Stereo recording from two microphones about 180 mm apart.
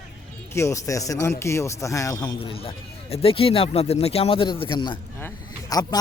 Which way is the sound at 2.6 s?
30° left (ahead or behind).